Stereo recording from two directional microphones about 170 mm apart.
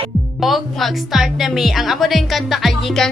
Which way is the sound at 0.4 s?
Centre (ahead or behind).